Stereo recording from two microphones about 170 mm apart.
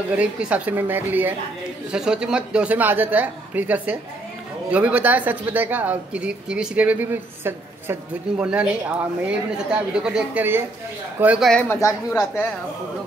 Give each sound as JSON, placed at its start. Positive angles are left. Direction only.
{"t": 0.1, "sound": "a woman's voice", "side_deg": -10}
{"t": 11.7, "sound": "speech", "side_deg": 15}